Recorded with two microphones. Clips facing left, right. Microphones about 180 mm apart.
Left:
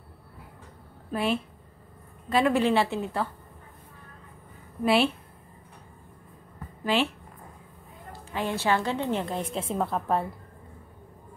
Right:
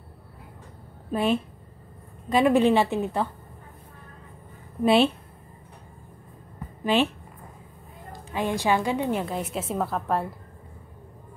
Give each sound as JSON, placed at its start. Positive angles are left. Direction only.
{"t": 1.1, "sound": "a woman's voice", "side_deg": -20}
{"t": 4.8, "sound": "speech", "side_deg": -20}
{"t": 6.8, "sound": "speech", "side_deg": -20}
{"t": 8.1, "sound": "a woman's voice", "side_deg": -15}